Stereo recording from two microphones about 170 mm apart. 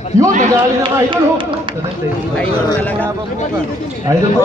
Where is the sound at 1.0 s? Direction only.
30° right (ahead or behind).